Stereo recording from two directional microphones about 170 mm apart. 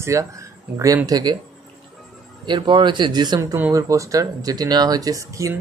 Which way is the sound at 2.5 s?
25° right (ahead or behind).